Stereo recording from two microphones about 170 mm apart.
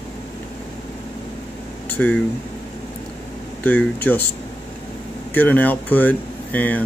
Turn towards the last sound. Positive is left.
turn(degrees=10)  # may be behind; listen again after turning